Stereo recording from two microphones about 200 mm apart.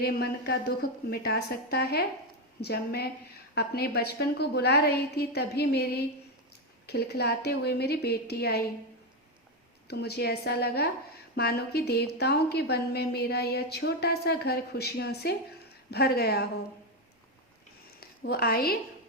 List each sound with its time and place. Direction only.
0.0 s a woman's voice: 55° left (ahead or behind)
9.8 s a woman's voice: 55° left (ahead or behind)
18.0 s a woman's voice: 50° left (ahead or behind)